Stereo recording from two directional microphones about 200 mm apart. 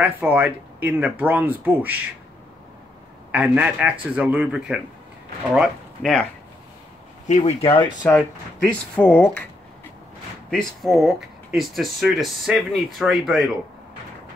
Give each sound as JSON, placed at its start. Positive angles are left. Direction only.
{"t": 0.0, "sound": "speech", "side_deg": -10}
{"t": 3.3, "sound": "speech", "side_deg": -10}
{"t": 7.2, "sound": "speech", "side_deg": 35}
{"t": 7.6, "sound": "speech", "side_deg": 20}
{"t": 8.9, "sound": "speech", "side_deg": 10}
{"t": 10.5, "sound": "speech", "side_deg": 0}